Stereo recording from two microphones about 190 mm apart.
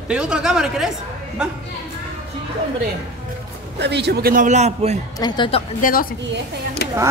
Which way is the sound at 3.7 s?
60° right (ahead or behind).